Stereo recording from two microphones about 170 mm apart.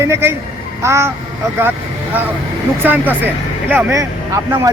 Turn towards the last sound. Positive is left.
turn(degrees=-20)  # may be behind; listen again after turning